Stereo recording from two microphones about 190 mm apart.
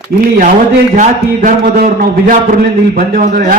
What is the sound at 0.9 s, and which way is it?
A man's voice, 40° right (ahead or behind).